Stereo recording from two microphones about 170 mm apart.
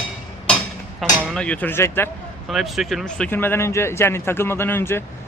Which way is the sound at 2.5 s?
Centre (ahead or behind).